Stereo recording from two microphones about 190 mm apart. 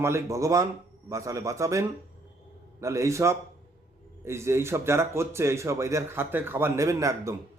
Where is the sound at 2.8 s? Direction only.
15° right (ahead or behind).